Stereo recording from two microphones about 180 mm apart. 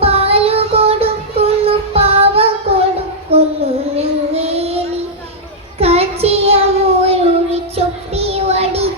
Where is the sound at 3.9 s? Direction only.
35° right (ahead or behind).